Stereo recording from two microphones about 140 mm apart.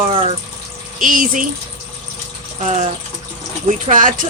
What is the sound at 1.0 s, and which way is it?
Speech, 75° right (ahead or behind).